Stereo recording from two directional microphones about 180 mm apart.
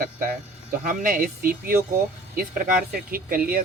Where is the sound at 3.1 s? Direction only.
50° right (ahead or behind).